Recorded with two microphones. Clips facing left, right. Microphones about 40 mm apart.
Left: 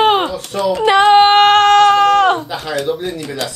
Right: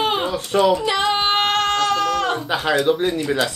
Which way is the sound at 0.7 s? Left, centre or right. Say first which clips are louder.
Left 9 dB; left.